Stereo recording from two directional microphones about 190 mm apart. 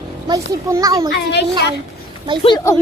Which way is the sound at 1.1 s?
65° left (ahead or behind).